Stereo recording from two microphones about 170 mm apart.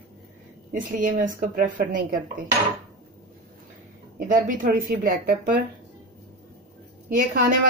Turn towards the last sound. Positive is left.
turn(degrees=-55)  # may be behind; listen again after turning